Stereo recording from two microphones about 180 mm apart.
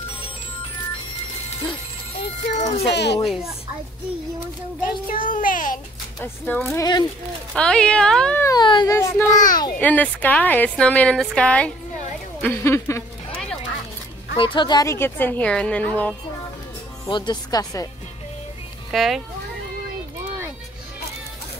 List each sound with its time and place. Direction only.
2.6 s a child's voice: 40° left (ahead or behind)
2.9 s a child's voice: 70° left (ahead or behind)
5.0 s a child's voice: 50° left (ahead or behind)
6.2 s a woman's voice: 10° left (ahead or behind)
7.5 s speech: 5° left (ahead or behind)
8.5 s a child's voice: 25° left (ahead or behind)
9.8 s a woman's voice: 10° left (ahead or behind)
14.3 s a woman's voice: 25° left (ahead or behind); by 16.2 s 5° left (ahead or behind)
17.0 s a child's voice: 20° left (ahead or behind)
18.9 s speech: centre (ahead or behind)